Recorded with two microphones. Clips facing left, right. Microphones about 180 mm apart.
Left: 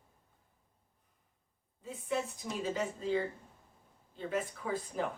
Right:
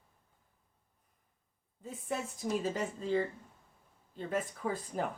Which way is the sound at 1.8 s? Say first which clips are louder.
Left 2 dB; 45° right (ahead or behind).